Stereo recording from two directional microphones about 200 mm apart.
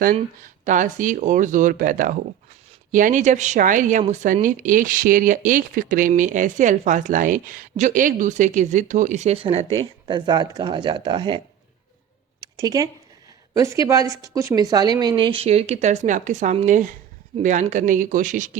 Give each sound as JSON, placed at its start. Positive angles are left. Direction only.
{"t": 0.6, "sound": "speech", "side_deg": -40}
{"t": 12.4, "sound": "a sound", "side_deg": -20}
{"t": 13.5, "sound": "speech", "side_deg": -15}